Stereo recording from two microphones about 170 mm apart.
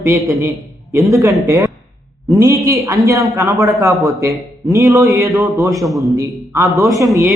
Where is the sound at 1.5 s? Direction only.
15° right (ahead or behind).